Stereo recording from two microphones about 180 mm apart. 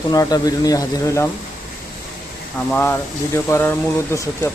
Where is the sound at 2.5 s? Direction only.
10° left (ahead or behind).